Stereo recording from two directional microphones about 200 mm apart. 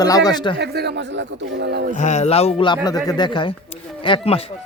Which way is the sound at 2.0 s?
35° left (ahead or behind).